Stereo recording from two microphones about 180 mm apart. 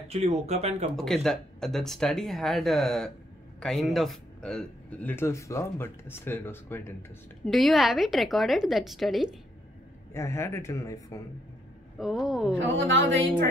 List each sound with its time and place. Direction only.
0.2 s speech: 35° right (ahead or behind)
0.9 s a man's voice: centre (ahead or behind)
7.4 s speech: centre (ahead or behind)
10.1 s a man's voice: 15° left (ahead or behind)
12.0 s speech: centre (ahead or behind)
12.5 s a woman's voice: 90° right